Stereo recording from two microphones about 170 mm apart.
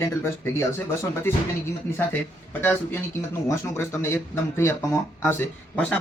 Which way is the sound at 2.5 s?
10° left (ahead or behind).